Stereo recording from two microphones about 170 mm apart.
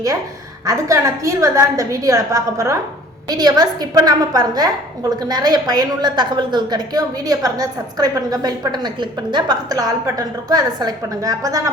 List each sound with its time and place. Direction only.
0.6 s a woman's voice: 20° right (ahead or behind)